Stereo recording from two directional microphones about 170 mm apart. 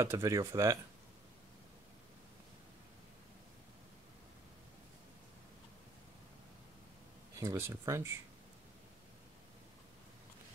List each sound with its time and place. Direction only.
0.0 s speech: 15° right (ahead or behind)
7.3 s speech: 15° right (ahead or behind)